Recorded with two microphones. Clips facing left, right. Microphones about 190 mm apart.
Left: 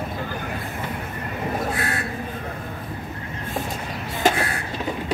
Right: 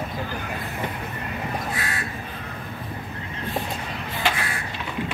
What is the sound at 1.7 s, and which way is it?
Crow, 60° left (ahead or behind).